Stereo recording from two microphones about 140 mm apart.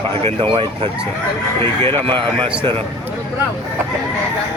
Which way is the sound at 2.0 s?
35° right (ahead or behind).